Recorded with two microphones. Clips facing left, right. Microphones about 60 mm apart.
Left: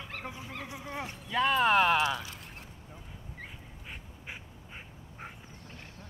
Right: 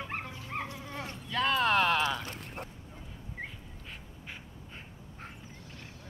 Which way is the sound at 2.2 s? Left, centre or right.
Right.